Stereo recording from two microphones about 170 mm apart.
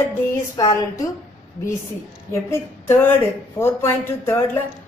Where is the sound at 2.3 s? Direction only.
15° left (ahead or behind).